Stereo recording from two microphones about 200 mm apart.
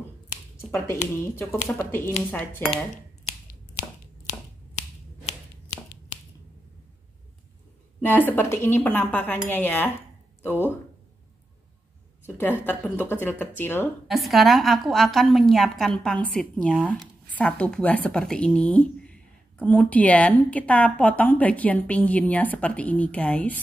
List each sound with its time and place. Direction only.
0.6 s speech: 10° left (ahead or behind)
4.3 s finger snapping: 35° left (ahead or behind)
8.0 s speech: 10° left (ahead or behind)
12.4 s speech: 10° left (ahead or behind)
14.0 s a woman's voice: centre (ahead or behind)